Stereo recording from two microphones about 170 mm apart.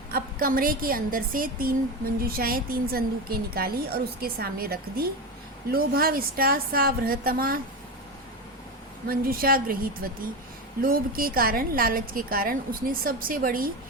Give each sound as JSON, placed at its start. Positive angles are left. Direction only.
{"t": 0.1, "sound": "a woman's voice", "side_deg": -60}
{"t": 9.0, "sound": "a woman's voice", "side_deg": -60}